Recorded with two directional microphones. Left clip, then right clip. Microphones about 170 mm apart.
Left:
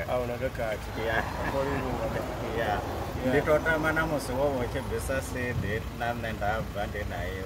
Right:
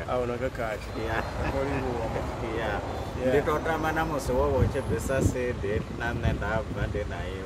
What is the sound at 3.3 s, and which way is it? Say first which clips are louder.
Speech: left 1 dB; 15° right (ahead or behind).